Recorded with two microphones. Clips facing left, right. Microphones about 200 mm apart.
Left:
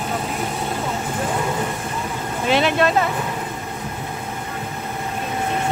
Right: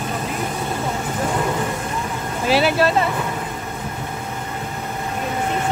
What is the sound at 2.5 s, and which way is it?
Speech, 5° right (ahead or behind).